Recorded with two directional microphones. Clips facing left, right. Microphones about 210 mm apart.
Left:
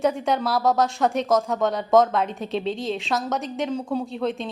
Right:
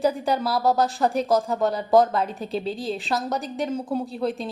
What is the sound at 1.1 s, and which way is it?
Speech, 30° right (ahead or behind).